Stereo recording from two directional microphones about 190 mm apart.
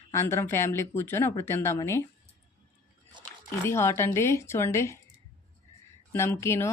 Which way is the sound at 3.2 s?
25° right (ahead or behind).